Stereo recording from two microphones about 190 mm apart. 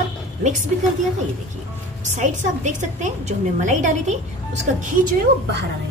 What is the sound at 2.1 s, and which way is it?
A woman's voice, 40° right (ahead or behind).